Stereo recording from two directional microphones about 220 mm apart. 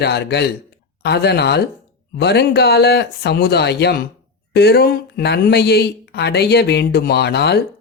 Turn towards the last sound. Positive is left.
turn(degrees=50)  # may be behind; listen again after turning